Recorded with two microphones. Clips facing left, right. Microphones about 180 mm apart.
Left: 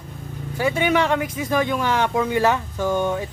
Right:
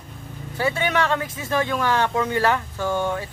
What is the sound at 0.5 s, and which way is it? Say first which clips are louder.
Speech: left 3 dB; 15° left (ahead or behind).